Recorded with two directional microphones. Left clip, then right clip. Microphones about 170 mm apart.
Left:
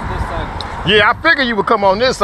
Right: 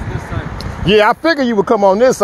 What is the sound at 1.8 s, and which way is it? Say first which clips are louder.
Speech: right 6 dB; 90° right.